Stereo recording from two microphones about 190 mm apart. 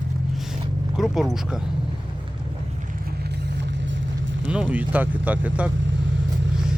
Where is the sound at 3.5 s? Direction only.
75° right (ahead or behind).